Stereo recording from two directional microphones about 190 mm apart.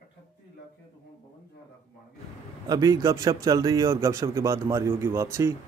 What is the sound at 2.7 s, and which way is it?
A man's voice, 15° right (ahead or behind).